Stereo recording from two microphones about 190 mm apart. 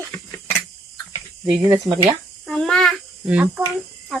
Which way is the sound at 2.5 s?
5° left (ahead or behind).